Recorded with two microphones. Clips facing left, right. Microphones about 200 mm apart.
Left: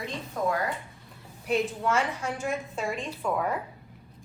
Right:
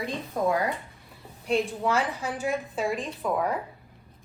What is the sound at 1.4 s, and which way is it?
A woman's voice, 5° left (ahead or behind).